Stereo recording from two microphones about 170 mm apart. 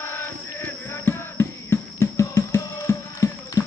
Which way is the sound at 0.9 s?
15° left (ahead or behind).